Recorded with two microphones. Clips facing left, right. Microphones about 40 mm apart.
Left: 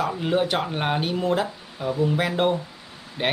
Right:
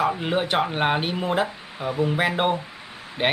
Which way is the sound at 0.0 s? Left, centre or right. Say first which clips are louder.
Even; centre.